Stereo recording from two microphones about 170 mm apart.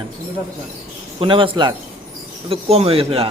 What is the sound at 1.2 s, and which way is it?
Speech, 30° right (ahead or behind).